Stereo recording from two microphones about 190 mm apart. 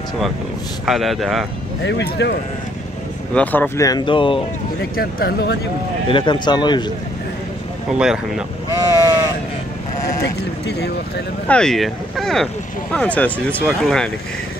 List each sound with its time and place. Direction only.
0.8 s speech: centre (ahead or behind)
1.9 s speech: 65° left (ahead or behind)
3.3 s speech: 10° left (ahead or behind); by 4.4 s 25° left (ahead or behind)
4.9 s speech: 55° left (ahead or behind)
6.0 s speech: 25° left (ahead or behind)
7.9 s speech: 5° right (ahead or behind)
8.7 s sheep: 20° right (ahead or behind)
11.4 s speech: 5° left (ahead or behind)